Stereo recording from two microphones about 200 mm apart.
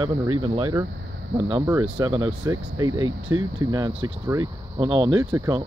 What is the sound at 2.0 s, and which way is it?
Speech, 25° right (ahead or behind).